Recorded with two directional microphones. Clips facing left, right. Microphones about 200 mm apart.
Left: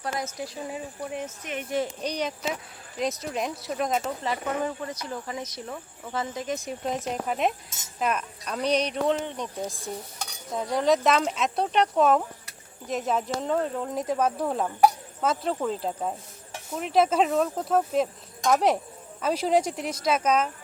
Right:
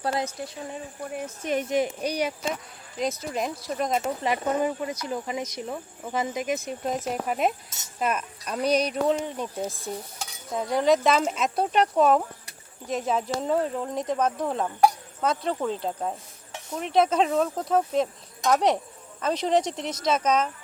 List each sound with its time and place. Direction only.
0.3 s speech: centre (ahead or behind)
1.4 s speech: 35° right (ahead or behind)
1.7 s speech: 10° right (ahead or behind)
4.2 s speech: 15° right (ahead or behind)
6.7 s speech: centre (ahead or behind)